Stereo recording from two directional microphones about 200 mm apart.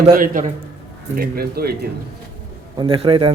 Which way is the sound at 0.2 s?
40° right (ahead or behind).